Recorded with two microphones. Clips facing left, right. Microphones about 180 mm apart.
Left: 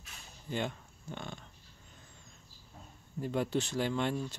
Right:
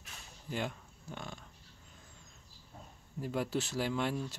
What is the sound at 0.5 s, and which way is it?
Speech, centre (ahead or behind).